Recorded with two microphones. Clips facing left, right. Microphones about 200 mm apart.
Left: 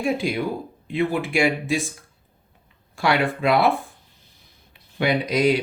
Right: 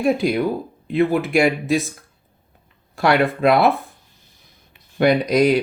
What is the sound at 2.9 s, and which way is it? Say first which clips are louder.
Speech: right 4 dB; 45° right (ahead or behind).